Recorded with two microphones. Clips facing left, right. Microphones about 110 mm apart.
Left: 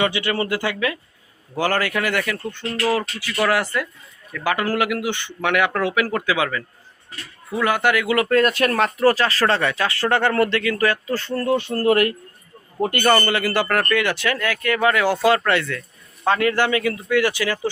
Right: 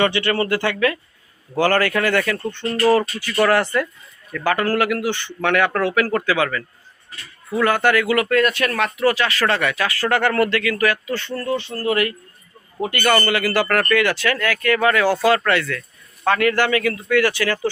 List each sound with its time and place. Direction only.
0.0 s speech: 10° left (ahead or behind); by 12.1 s 45° left (ahead or behind)
13.0 s speech: 20° left (ahead or behind)